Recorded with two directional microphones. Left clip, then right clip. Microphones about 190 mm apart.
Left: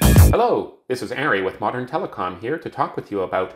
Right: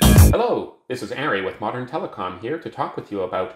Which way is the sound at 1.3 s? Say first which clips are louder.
Left 2 dB; 25° left (ahead or behind).